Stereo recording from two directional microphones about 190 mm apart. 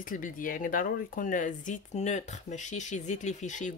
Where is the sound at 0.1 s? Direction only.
45° left (ahead or behind).